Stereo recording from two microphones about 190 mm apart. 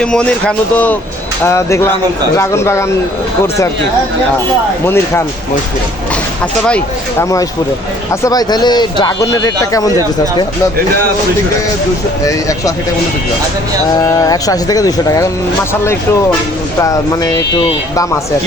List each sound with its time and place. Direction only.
0.0 s speech: 5° left (ahead or behind)
4.9 s speech: 15° left (ahead or behind)
6.7 s speech: 5° left (ahead or behind)
8.1 s speech: 15° left (ahead or behind)
12.2 s speech: 15° left (ahead or behind)
14.0 s speech: 20° left (ahead or behind)
16.8 s speech: 15° left (ahead or behind)